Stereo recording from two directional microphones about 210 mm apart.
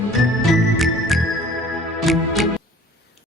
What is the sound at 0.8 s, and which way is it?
Music, centre (ahead or behind).